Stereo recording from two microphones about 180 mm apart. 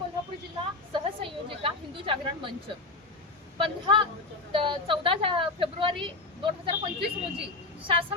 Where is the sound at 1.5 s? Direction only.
30° right (ahead or behind).